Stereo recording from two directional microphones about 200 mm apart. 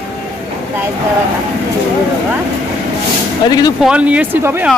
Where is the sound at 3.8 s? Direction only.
5° right (ahead or behind).